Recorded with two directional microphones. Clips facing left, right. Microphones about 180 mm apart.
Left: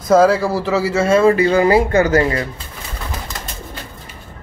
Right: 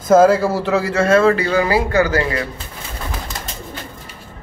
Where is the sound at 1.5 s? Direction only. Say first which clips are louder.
Left 3 dB; 25° left (ahead or behind).